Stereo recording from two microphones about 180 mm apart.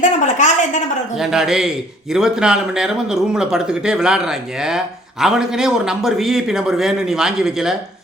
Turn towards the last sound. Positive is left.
turn(degrees=-5)  # may be behind; listen again after turning